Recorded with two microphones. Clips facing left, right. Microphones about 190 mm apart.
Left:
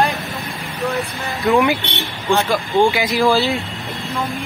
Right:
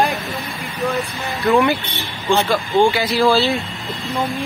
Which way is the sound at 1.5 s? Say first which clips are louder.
Even; 15° left (ahead or behind).